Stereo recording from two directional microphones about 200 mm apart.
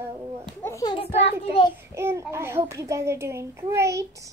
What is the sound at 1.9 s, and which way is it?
A child's voice, 15° right (ahead or behind).